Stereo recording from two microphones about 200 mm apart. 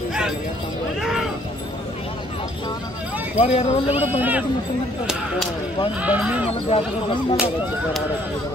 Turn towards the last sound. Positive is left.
turn(degrees=25)  # may be behind; listen again after turning